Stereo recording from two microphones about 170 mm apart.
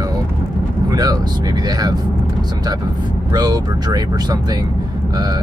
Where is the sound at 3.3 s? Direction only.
25° right (ahead or behind).